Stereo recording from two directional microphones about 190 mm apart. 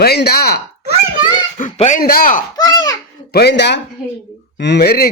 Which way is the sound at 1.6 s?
40° left (ahead or behind).